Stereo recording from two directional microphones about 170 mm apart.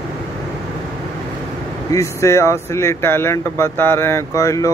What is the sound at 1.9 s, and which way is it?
Speech, 20° left (ahead or behind).